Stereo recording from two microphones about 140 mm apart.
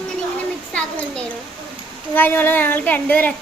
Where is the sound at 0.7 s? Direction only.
10° left (ahead or behind).